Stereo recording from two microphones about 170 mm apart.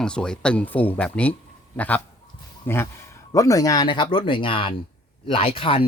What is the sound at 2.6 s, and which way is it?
Speech, 15° left (ahead or behind).